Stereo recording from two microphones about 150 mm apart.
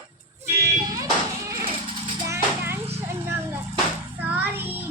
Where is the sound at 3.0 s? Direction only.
15° right (ahead or behind).